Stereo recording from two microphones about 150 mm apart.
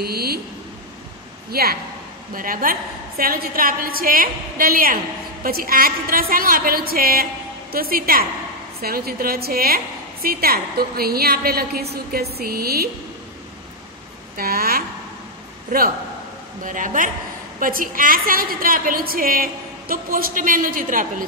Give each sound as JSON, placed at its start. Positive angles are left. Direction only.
{"t": 0.0, "sound": "a sound", "side_deg": -90}
{"t": 1.5, "sound": "a woman's voice", "side_deg": -90}
{"t": 2.3, "sound": "a woman's voice", "side_deg": -70}
{"t": 14.3, "sound": "a woman's voice", "side_deg": -85}
{"t": 16.6, "sound": "a woman's voice", "side_deg": -60}